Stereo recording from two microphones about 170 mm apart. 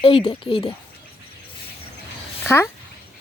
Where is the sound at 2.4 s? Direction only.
15° left (ahead or behind).